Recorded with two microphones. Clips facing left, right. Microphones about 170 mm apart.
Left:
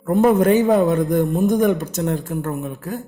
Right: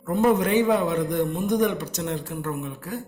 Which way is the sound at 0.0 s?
55° left (ahead or behind).